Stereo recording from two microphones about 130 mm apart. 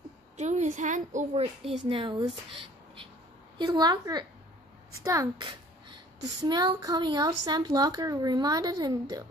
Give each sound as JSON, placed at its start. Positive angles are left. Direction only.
{"t": 0.4, "sound": "a woman's voice", "side_deg": -60}
{"t": 1.9, "sound": "a woman's voice", "side_deg": -40}
{"t": 3.5, "sound": "a woman's voice", "side_deg": -35}